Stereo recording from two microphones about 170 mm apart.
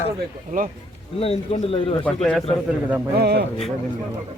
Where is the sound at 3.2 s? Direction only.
70° right (ahead or behind).